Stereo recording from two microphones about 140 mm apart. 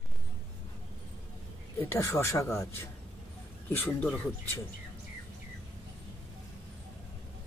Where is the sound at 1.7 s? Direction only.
20° left (ahead or behind).